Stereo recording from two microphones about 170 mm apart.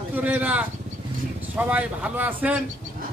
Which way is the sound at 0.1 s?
10° right (ahead or behind).